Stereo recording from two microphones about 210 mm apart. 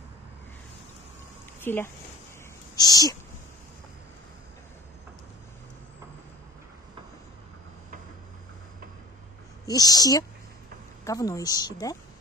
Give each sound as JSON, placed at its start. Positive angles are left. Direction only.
{"t": 1.6, "sound": "speech", "side_deg": 10}
{"t": 9.7, "sound": "a woman's voice", "side_deg": 15}